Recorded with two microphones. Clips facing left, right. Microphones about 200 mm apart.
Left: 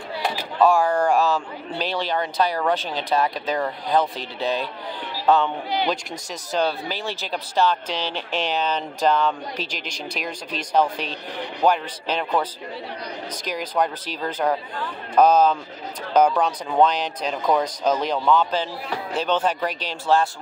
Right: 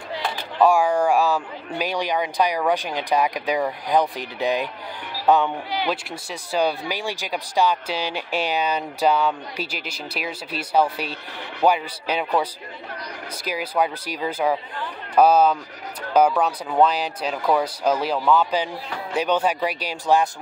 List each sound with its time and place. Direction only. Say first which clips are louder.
0.6 s speech: right 1 dB; 10° right (ahead or behind)
6.5 s speech: right 1 dB; 10° right (ahead or behind)
13.5 s speech: right 1 dB; 5° right (ahead or behind)